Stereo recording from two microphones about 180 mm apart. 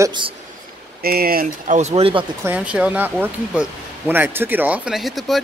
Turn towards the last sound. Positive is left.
turn(degrees=0)  # may be behind; listen again after turning